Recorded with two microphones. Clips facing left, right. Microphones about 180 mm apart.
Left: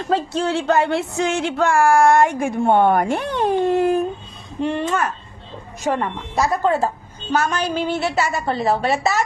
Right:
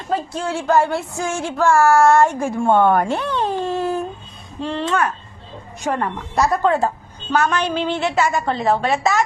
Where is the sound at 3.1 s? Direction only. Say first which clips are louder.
Left 1 dB; 50° left (ahead or behind).